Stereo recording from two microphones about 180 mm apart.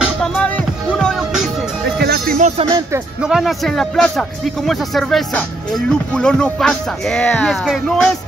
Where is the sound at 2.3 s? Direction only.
40° right (ahead or behind).